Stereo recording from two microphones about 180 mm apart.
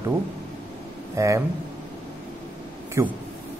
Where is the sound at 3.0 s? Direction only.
15° right (ahead or behind).